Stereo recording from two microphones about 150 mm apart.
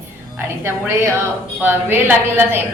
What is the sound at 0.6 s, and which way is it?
A woman's voice, 15° right (ahead or behind).